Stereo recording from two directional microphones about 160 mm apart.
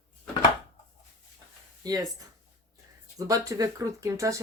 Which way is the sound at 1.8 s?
25° right (ahead or behind).